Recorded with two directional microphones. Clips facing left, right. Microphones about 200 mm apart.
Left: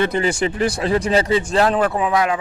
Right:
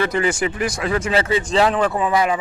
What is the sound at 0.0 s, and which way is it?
Speech, 25° left (ahead or behind).